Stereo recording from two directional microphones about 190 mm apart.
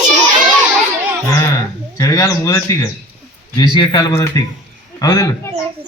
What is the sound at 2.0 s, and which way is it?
Speech, 15° left (ahead or behind).